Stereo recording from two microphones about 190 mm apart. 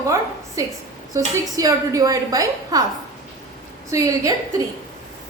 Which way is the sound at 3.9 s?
15° right (ahead or behind).